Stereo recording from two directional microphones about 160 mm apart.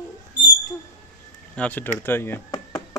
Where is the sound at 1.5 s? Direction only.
10° left (ahead or behind).